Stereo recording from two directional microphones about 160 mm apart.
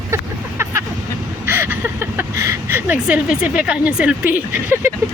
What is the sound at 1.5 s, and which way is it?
Speech, 15° right (ahead or behind).